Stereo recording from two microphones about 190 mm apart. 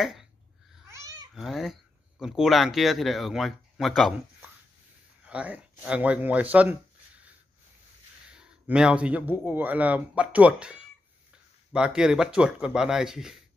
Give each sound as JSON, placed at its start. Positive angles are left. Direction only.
{"t": 0.0, "sound": "babbling", "side_deg": 0}
{"t": 0.8, "sound": "babbling", "side_deg": -15}
{"t": 1.3, "sound": "speech", "side_deg": 0}
{"t": 5.2, "sound": "speech", "side_deg": -5}
{"t": 8.3, "sound": "speech", "side_deg": -5}